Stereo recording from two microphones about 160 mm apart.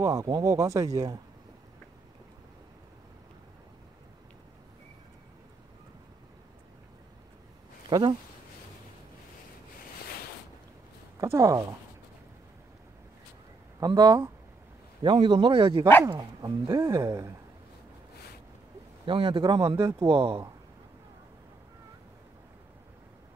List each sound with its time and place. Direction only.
0.0 s speech: 20° right (ahead or behind)
7.9 s speech: 30° right (ahead or behind)
11.1 s speech: 20° right (ahead or behind)
13.7 s speech: 25° right (ahead or behind)
19.0 s speech: 30° right (ahead or behind)
20.1 s speech: 35° right (ahead or behind)